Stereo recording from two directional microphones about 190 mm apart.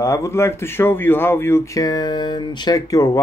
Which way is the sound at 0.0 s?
15° left (ahead or behind).